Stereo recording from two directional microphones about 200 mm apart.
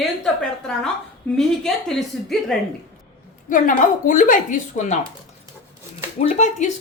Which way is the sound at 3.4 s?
40° left (ahead or behind).